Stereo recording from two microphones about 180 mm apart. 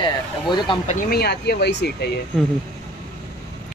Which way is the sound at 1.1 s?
65° left (ahead or behind).